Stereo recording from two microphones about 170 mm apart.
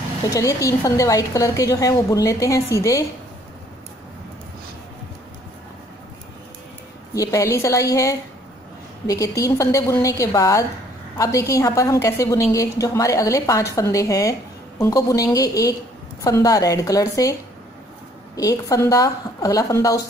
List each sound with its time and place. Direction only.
0.3 s a woman's voice: 20° left (ahead or behind)
7.2 s a woman's voice: 20° left (ahead or behind)